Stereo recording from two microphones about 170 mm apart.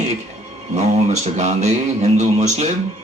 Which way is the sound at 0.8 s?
45° right (ahead or behind).